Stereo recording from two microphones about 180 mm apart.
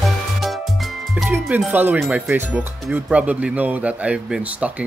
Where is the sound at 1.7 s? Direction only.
10° right (ahead or behind).